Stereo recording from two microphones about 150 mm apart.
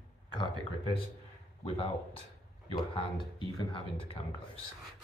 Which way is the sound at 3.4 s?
35° left (ahead or behind).